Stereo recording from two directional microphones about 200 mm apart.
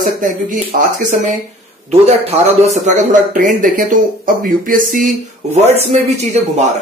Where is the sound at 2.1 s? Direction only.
35° right (ahead or behind).